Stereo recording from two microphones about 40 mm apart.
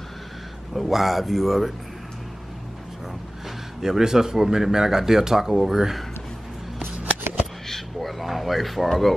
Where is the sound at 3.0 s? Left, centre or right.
Centre.